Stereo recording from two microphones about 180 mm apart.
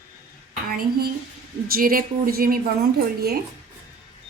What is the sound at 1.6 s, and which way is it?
A woman's voice, 55° right (ahead or behind).